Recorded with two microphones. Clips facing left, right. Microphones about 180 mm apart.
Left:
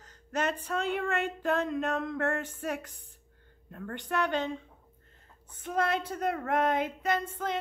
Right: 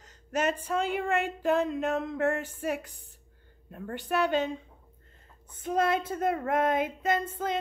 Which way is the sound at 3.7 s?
10° right (ahead or behind).